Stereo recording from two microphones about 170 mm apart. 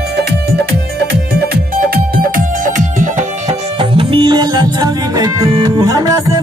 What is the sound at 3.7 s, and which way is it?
Music, 30° right (ahead or behind).